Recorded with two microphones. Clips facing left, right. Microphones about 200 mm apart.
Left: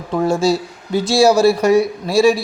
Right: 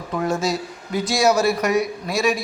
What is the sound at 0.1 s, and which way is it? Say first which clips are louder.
Speech: left 6 dB; 30° left (ahead or behind).